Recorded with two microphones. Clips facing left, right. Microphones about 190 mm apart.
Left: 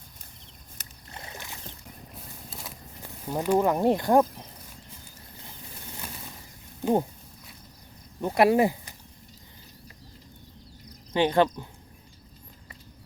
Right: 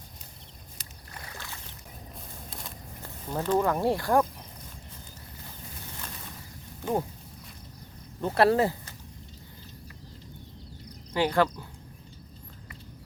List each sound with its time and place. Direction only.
1.1 s boat: 20° left (ahead or behind)
3.0 s speech: 15° left (ahead or behind)
8.2 s speech: 15° left (ahead or behind)
11.1 s speech: 20° left (ahead or behind)